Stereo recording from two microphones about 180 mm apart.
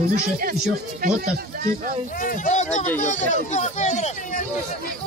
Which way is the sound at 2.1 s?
50° left (ahead or behind).